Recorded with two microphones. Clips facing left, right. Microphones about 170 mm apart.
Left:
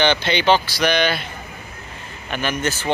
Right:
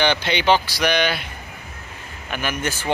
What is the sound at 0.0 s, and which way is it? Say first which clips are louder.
Speech: left 2 dB; 10° right (ahead or behind).